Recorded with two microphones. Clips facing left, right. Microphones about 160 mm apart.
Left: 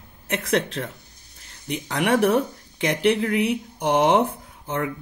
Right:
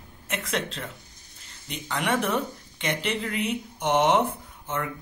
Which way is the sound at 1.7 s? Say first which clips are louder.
Left 5 dB; 75° left (ahead or behind).